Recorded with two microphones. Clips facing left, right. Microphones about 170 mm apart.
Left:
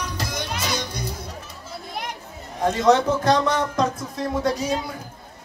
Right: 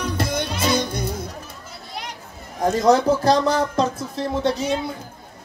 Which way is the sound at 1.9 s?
55° left (ahead or behind).